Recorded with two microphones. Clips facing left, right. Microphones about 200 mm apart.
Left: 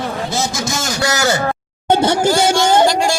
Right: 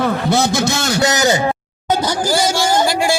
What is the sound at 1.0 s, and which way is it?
Speech, 20° right (ahead or behind).